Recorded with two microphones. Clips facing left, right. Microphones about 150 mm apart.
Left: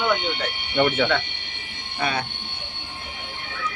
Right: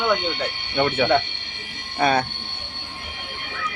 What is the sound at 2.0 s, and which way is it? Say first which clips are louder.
Speech: right 6 dB; 45° right (ahead or behind).